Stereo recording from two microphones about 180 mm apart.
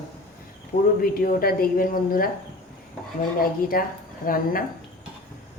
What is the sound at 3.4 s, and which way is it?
A woman's voice, 55° left (ahead or behind).